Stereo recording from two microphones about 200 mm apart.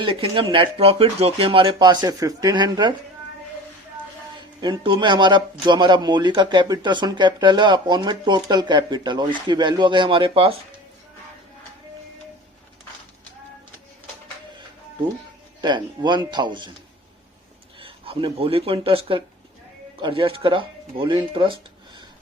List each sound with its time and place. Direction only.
0.0 s speech: 25° right (ahead or behind)
4.6 s speech: 25° right (ahead or behind)
15.6 s speech: 20° right (ahead or behind)
17.7 s speech: 25° right (ahead or behind)